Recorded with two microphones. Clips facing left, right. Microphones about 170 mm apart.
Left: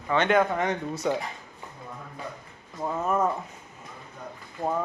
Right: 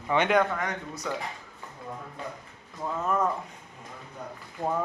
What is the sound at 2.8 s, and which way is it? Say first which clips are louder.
Speech: left 3 dB; 20° left (ahead or behind).